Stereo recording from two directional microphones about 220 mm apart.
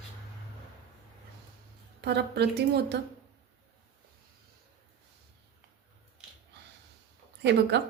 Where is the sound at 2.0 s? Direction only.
50° right (ahead or behind).